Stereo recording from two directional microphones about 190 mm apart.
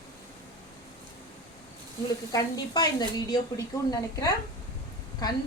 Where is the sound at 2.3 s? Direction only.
20° left (ahead or behind).